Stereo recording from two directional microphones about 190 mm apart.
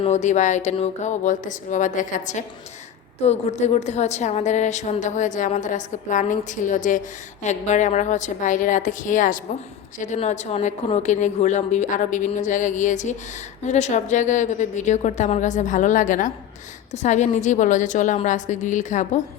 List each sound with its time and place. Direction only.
0.0 s a woman's voice: 40° left (ahead or behind)